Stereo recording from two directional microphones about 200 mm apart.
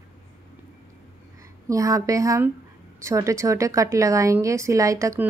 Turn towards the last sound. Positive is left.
turn(degrees=-15)  # may be behind; listen again after turning